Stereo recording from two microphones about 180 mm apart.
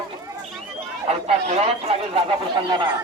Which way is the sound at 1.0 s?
35° right (ahead or behind).